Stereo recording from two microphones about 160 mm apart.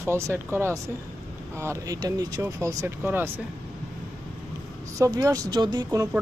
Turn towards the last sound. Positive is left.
turn(degrees=-25)  # may be behind; listen again after turning